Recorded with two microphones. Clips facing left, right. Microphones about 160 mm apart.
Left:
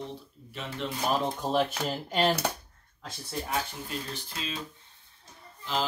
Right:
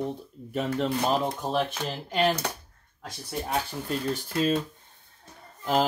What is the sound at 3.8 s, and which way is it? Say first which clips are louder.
Speech: right 8 dB; 50° right (ahead or behind).